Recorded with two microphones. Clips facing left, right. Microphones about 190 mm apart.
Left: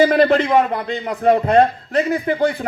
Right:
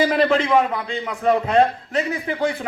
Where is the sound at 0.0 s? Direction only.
45° left (ahead or behind).